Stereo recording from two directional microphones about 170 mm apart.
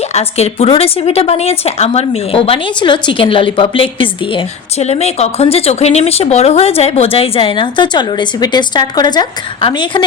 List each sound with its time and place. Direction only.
0.1 s a woman's voice: 35° left (ahead or behind)